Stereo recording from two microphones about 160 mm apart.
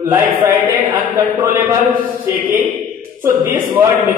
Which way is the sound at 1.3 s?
20° right (ahead or behind).